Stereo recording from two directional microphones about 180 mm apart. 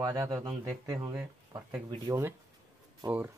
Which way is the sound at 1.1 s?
5° right (ahead or behind).